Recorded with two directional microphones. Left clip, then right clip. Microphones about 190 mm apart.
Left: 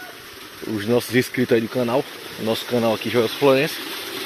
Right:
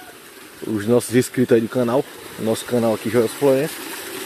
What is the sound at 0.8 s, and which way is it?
Speech, 45° right (ahead or behind).